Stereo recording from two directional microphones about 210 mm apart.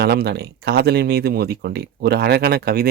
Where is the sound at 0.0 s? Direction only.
50° right (ahead or behind).